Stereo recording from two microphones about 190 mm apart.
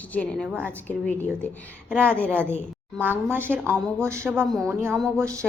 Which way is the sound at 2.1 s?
5° left (ahead or behind).